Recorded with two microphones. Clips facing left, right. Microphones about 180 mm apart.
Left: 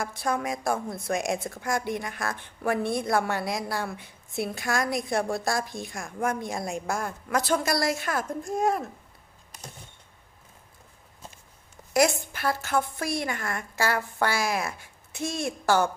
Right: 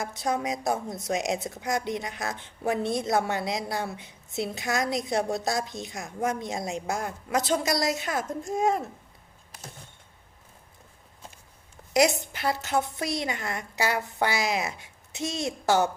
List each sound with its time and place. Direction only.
0.0 s a woman's voice: 20° right (ahead or behind)
11.9 s a woman's voice: 20° right (ahead or behind)